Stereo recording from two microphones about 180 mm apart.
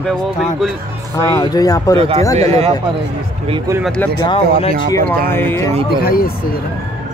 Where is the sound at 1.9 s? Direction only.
30° right (ahead or behind).